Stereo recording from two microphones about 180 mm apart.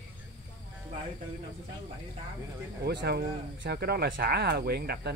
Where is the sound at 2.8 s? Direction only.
65° right (ahead or behind).